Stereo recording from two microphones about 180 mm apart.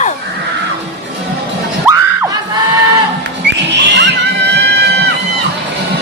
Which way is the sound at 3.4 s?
75° right (ahead or behind).